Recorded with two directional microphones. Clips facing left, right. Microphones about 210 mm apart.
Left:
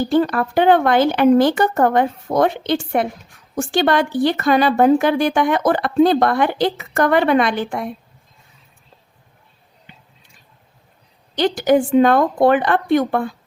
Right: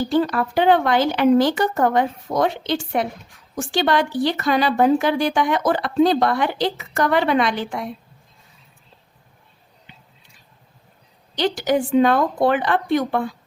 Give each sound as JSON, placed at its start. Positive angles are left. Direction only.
{"t": 0.1, "sound": "speech", "side_deg": 50}
{"t": 11.3, "sound": "speech", "side_deg": 50}